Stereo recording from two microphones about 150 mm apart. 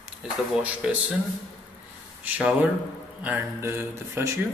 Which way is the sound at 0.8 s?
5° right (ahead or behind).